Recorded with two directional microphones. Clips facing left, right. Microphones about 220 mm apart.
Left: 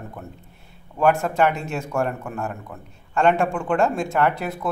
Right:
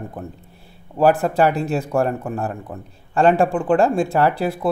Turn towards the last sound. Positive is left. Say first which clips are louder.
# right 4 dB
turn(degrees=-30)  # may be behind; listen again after turning